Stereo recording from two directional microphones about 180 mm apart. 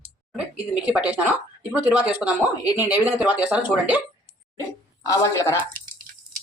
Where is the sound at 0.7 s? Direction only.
5° right (ahead or behind).